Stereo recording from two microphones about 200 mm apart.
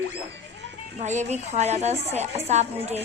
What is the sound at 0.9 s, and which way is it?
A woman's voice, 35° right (ahead or behind).